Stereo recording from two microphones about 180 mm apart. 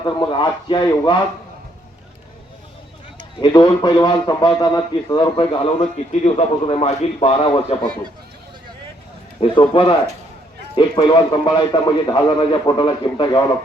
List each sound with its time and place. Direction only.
0.0 s a man's voice: 25° left (ahead or behind)
3.4 s a man's voice: 25° left (ahead or behind)
6.1 s a man's voice: 35° left (ahead or behind)
9.4 s a man's voice: 30° left (ahead or behind)